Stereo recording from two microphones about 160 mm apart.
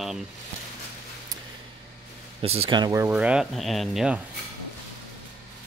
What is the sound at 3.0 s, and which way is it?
Speech, 5° right (ahead or behind).